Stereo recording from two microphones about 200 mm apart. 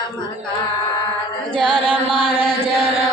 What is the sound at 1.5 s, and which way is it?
Chant, 5° left (ahead or behind).